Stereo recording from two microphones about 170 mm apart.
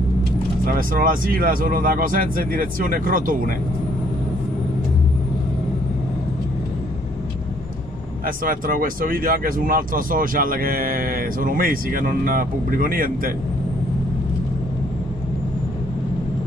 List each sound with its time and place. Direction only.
0.7 s speech: 55° right (ahead or behind)
8.5 s speech: 55° right (ahead or behind)